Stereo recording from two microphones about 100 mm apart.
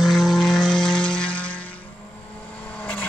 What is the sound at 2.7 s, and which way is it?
Vehicle, 15° left (ahead or behind).